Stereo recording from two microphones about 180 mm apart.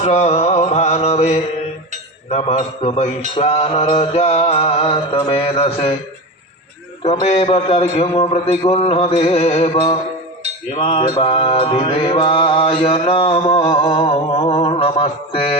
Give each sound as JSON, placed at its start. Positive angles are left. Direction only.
{"t": 0.0, "sound": "mantra", "side_deg": 35}
{"t": 7.0, "sound": "mantra", "side_deg": 35}